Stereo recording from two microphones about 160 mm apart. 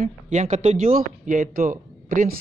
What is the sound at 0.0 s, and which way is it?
Speech, 50° right (ahead or behind).